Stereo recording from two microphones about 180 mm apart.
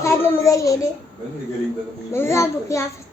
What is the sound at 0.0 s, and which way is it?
Speech, 15° left (ahead or behind).